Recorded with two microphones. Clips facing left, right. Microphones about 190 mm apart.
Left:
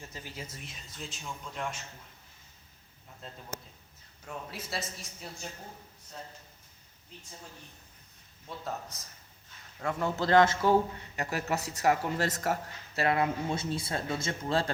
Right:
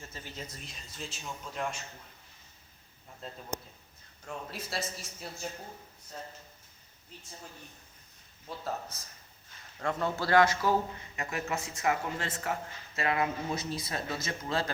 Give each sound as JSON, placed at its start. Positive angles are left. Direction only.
{"t": 0.1, "sound": "speech", "side_deg": 10}
{"t": 4.3, "sound": "speech", "side_deg": 0}
{"t": 8.4, "sound": "speech", "side_deg": 0}
{"t": 9.8, "sound": "a man's voice", "side_deg": 15}
{"t": 11.2, "sound": "speech", "side_deg": 35}